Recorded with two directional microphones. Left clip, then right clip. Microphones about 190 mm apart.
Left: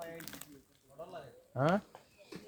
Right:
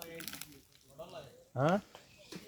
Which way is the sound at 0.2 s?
25° left (ahead or behind).